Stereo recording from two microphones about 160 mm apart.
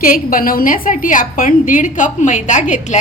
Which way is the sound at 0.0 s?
60° left (ahead or behind).